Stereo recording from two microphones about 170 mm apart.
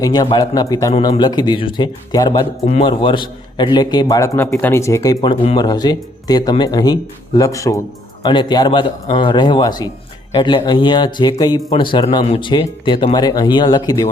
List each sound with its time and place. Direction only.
0.0 s speech: 25° left (ahead or behind)
5.2 s speech: 30° left (ahead or behind)